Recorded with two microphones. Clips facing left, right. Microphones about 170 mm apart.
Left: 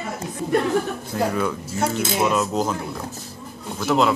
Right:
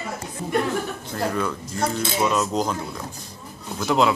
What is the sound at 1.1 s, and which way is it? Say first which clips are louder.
Cutlery: left 2 dB; 5° left (ahead or behind).